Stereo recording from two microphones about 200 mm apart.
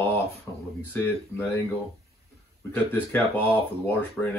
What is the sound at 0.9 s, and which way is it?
Speech, 10° left (ahead or behind).